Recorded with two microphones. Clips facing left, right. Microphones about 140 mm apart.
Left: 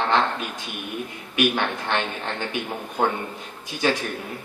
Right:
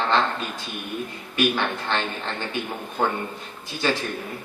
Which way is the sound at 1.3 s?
15° left (ahead or behind).